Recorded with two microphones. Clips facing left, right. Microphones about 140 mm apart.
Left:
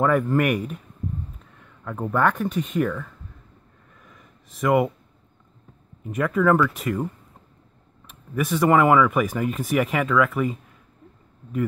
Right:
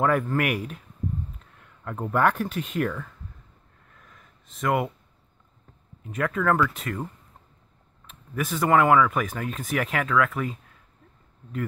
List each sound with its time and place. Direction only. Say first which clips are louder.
0.0 s speech: left 3 dB; centre (ahead or behind)
4.0 s a sound: left 4 dB; centre (ahead or behind)
6.0 s speech: left 4 dB; centre (ahead or behind)
8.4 s speech: left 3 dB; centre (ahead or behind)